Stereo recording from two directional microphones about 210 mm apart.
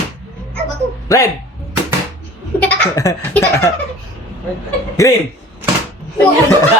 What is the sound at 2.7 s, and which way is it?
A man's voice, 10° left (ahead or behind).